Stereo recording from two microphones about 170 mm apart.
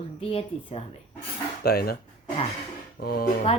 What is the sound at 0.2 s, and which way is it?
Speech, 35° left (ahead or behind).